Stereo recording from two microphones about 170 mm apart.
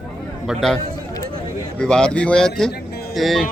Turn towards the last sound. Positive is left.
turn(degrees=0)  # may be behind; listen again after turning